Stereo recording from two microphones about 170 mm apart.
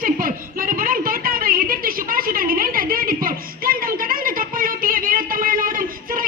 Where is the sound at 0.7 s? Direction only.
55° right (ahead or behind).